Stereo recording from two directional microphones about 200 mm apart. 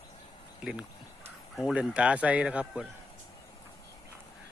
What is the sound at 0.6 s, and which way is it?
A man's voice, 5° right (ahead or behind).